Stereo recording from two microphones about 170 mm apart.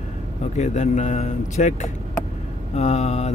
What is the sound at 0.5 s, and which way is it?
Speech, 45° left (ahead or behind).